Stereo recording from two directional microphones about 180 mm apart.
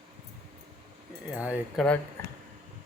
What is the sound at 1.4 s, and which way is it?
Speech, 5° right (ahead or behind).